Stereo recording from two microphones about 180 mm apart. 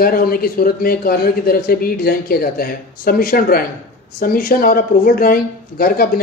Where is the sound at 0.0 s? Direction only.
55° left (ahead or behind).